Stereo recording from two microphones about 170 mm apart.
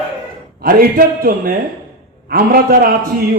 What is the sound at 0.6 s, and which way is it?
A man's voice, 60° right (ahead or behind).